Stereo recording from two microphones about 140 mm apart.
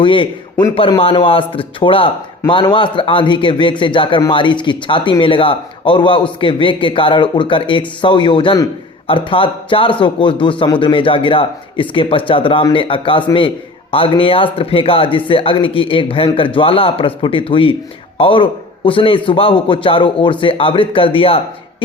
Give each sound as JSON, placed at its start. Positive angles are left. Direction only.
{"t": 0.0, "sound": "a man's voice", "side_deg": 35}